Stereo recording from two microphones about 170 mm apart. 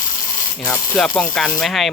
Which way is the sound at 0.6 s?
5° left (ahead or behind).